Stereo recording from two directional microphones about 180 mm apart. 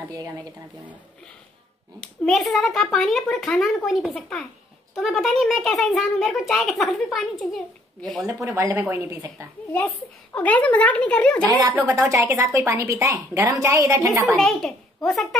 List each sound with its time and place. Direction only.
0.1 s speech: 20° right (ahead or behind)
2.0 s speech: centre (ahead or behind)
8.3 s a woman's voice: 15° right (ahead or behind)
9.7 s a woman's voice: 10° left (ahead or behind)
12.3 s a woman's voice: 15° right (ahead or behind)
14.2 s speech: centre (ahead or behind)